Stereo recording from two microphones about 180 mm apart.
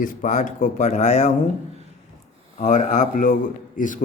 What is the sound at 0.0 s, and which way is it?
Speech, 45° left (ahead or behind).